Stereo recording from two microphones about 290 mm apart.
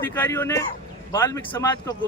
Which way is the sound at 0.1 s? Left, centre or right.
Centre.